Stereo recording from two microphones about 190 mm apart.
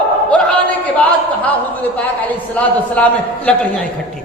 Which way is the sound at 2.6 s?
5° left (ahead or behind).